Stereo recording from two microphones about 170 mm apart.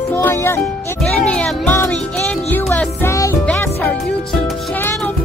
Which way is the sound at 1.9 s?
5° left (ahead or behind).